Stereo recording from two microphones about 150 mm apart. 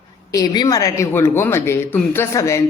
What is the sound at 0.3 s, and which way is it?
Speech, 25° left (ahead or behind).